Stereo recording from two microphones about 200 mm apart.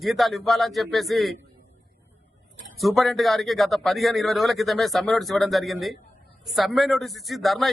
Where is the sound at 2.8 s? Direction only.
Centre (ahead or behind).